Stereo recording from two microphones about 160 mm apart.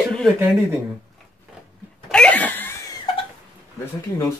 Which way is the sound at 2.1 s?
5° left (ahead or behind).